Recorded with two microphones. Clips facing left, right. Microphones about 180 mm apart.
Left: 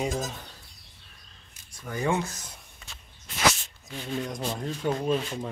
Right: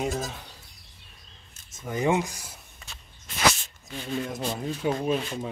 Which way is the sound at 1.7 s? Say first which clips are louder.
Right 3 dB; 20° right (ahead or behind).